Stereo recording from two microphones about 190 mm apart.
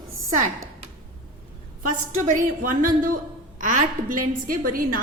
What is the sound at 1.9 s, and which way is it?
A woman's voice, 45° right (ahead or behind).